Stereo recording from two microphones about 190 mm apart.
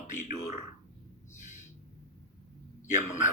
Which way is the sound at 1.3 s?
40° left (ahead or behind).